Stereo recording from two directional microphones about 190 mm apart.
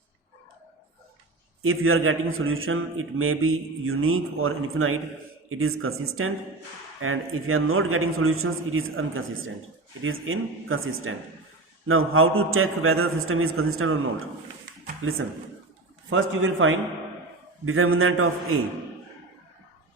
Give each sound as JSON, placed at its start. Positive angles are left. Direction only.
{"t": 1.6, "sound": "a man's voice", "side_deg": -90}
{"t": 16.0, "sound": "a man's voice", "side_deg": -90}